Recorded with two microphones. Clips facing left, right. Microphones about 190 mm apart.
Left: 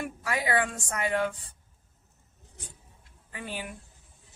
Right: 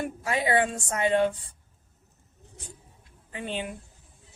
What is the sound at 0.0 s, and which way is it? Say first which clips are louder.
Speech: right 3 dB; 25° right (ahead or behind).